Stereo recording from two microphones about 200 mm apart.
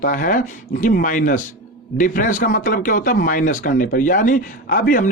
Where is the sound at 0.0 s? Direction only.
45° left (ahead or behind).